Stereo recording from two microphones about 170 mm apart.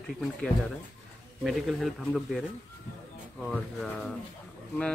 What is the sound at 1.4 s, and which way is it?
Speech, centre (ahead or behind).